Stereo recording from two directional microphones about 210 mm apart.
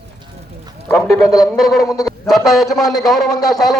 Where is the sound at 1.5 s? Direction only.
Centre (ahead or behind).